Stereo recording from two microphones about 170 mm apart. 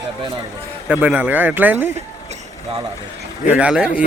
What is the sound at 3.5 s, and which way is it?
Speech, 5° right (ahead or behind).